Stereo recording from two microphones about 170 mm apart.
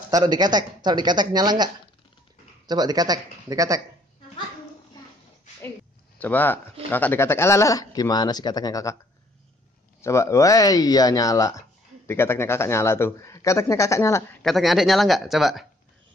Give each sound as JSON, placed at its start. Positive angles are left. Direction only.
{"t": 0.1, "sound": "speech", "side_deg": -25}
{"t": 6.1, "sound": "speech", "side_deg": 10}
{"t": 10.0, "sound": "speech", "side_deg": 15}
{"t": 14.4, "sound": "speech", "side_deg": 0}